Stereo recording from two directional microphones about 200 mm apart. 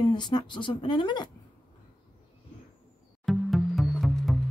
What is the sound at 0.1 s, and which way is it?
A woman's voice, 20° left (ahead or behind).